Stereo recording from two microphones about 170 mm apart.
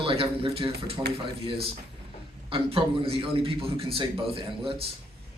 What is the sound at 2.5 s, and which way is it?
A man's voice, 35° right (ahead or behind).